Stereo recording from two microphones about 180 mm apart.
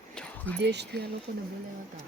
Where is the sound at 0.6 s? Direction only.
70° right (ahead or behind).